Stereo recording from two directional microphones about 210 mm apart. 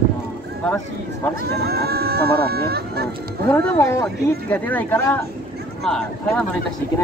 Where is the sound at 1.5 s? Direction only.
50° right (ahead or behind).